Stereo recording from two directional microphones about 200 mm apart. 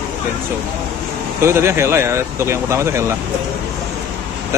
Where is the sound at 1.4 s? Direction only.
15° right (ahead or behind).